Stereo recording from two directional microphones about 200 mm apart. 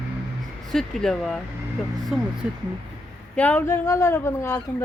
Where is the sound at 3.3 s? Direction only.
10° left (ahead or behind).